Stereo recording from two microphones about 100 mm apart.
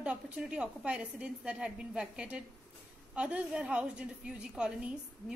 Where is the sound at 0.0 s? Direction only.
10° right (ahead or behind).